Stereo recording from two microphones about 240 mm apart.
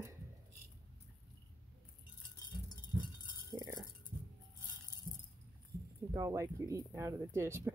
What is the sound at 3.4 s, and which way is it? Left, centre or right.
Chink, centre.